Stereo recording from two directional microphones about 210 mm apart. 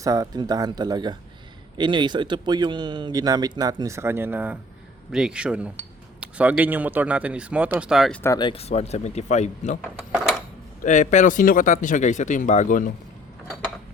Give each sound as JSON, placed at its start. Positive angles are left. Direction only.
{"t": 0.0, "sound": "speech", "side_deg": -15}
{"t": 8.2, "sound": "speech", "side_deg": 15}
{"t": 10.1, "sound": "a sound", "side_deg": -5}
{"t": 10.8, "sound": "speech", "side_deg": 35}